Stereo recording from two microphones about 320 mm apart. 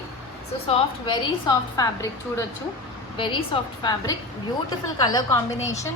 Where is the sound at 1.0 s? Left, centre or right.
Centre.